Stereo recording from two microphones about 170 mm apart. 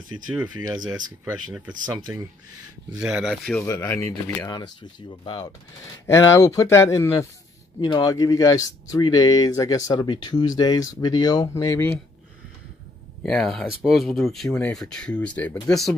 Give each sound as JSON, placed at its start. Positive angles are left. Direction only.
{"t": 0.6, "sound": "speech", "side_deg": -25}
{"t": 2.9, "sound": "speech", "side_deg": -5}
{"t": 3.6, "sound": "speech", "side_deg": 20}
{"t": 6.0, "sound": "speech", "side_deg": 15}
{"t": 13.2, "sound": "speech", "side_deg": 5}